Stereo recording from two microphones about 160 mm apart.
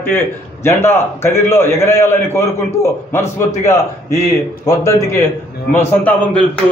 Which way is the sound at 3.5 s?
45° left (ahead or behind).